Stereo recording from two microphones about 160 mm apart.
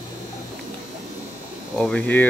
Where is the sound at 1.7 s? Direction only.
10° left (ahead or behind).